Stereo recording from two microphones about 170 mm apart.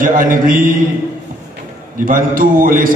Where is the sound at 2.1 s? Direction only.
55° right (ahead or behind).